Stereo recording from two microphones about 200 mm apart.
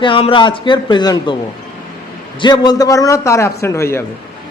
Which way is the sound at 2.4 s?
20° left (ahead or behind).